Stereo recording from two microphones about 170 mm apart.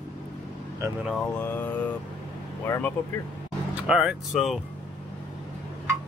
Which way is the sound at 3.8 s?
5° right (ahead or behind).